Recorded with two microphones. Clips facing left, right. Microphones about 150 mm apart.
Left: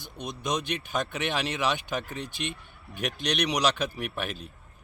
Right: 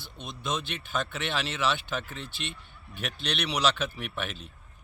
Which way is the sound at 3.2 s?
15° left (ahead or behind).